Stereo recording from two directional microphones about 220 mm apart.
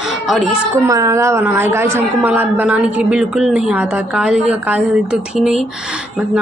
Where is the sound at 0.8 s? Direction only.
15° right (ahead or behind).